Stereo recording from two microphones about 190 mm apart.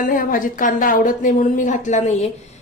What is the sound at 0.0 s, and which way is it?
A woman's voice, 45° left (ahead or behind).